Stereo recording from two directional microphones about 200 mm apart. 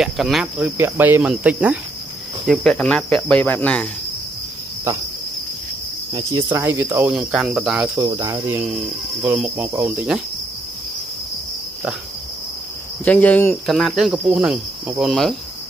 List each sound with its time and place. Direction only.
0.0 s cricket: centre (ahead or behind)
6.1 s cricket: 20° right (ahead or behind)
8.0 s cricket: 15° right (ahead or behind)
13.0 s cricket: 5° left (ahead or behind)